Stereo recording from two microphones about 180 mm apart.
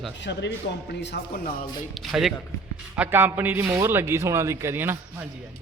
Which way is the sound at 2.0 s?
Centre (ahead or behind).